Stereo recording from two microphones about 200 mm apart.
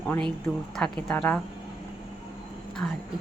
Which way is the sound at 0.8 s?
5° left (ahead or behind).